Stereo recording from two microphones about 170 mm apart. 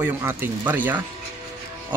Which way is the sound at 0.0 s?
15° right (ahead or behind).